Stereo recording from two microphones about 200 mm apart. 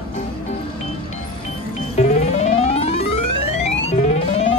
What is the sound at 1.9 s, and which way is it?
Music, 35° left (ahead or behind).